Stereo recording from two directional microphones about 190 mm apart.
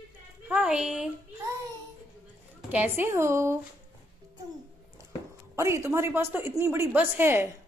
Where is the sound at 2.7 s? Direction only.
10° right (ahead or behind).